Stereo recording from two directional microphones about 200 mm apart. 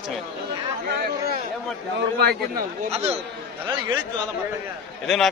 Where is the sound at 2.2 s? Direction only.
50° right (ahead or behind).